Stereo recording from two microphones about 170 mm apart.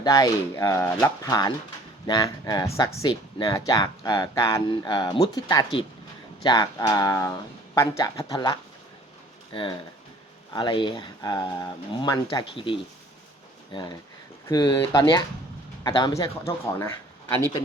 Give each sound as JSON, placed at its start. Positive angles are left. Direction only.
{"t": 0.0, "sound": "speech", "side_deg": 20}
{"t": 14.4, "sound": "speech", "side_deg": 25}